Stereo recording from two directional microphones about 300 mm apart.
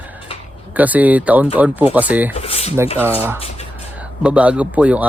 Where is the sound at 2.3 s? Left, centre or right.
Centre.